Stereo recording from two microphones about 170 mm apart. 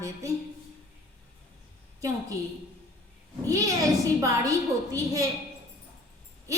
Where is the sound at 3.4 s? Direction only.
20° right (ahead or behind).